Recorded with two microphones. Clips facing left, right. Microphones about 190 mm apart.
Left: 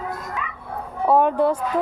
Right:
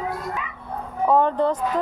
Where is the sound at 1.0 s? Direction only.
10° left (ahead or behind).